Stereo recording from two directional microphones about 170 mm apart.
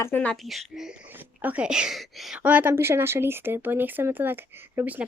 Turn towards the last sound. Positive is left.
turn(degrees=-10)  # may be behind; listen again after turning